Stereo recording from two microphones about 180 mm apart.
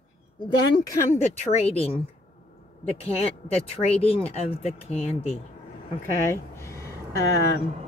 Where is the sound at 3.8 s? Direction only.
35° left (ahead or behind).